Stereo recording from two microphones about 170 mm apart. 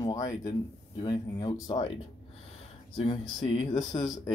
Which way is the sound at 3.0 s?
30° left (ahead or behind).